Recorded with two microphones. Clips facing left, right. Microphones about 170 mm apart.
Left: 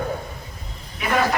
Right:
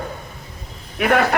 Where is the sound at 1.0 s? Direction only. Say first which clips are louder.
Right 4 dB; 60° right (ahead or behind).